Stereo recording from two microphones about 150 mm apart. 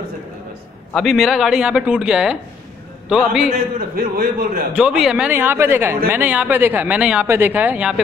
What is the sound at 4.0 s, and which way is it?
Speech, 75° right (ahead or behind).